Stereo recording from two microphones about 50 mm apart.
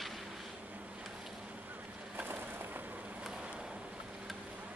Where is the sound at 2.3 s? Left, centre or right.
Right.